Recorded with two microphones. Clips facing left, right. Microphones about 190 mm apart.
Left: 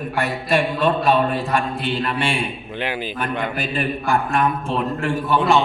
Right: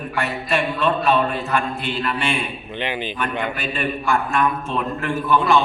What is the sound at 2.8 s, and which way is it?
Speech, 5° left (ahead or behind).